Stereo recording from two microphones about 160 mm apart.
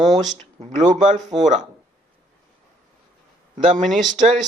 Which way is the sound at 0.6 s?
50° right (ahead or behind).